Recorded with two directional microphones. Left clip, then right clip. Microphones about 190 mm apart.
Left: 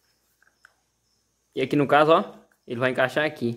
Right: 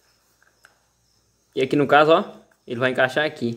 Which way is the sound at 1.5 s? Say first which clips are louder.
Right 3 dB; centre (ahead or behind).